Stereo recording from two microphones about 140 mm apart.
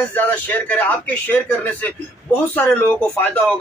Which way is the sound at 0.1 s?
10° left (ahead or behind).